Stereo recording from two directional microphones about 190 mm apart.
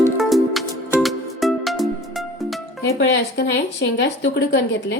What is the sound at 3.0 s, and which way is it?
A woman's voice, 70° left (ahead or behind).